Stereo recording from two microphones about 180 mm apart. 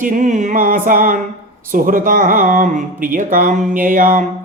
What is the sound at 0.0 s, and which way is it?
Mantra, 45° right (ahead or behind).